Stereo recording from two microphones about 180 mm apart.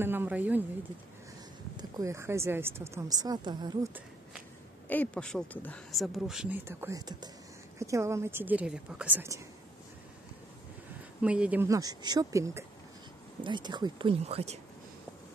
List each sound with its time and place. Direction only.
0.0 s a woman's voice: 10° right (ahead or behind)
1.8 s a woman's voice: 20° right (ahead or behind)
4.8 s a woman's voice: 10° left (ahead or behind); by 9.4 s 10° right (ahead or behind)
11.2 s a woman's voice: 5° right (ahead or behind); by 14.6 s 35° right (ahead or behind)